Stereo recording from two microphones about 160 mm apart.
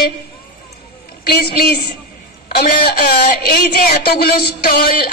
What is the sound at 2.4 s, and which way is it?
A woman's voice, 75° left (ahead or behind).